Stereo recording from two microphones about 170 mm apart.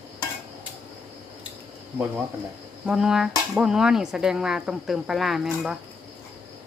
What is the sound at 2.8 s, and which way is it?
Speech, 5° right (ahead or behind).